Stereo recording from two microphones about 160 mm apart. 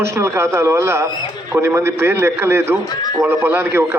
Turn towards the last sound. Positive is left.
turn(degrees=-15)  # may be behind; listen again after turning